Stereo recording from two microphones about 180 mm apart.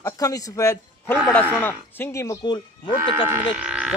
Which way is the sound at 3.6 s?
5° right (ahead or behind).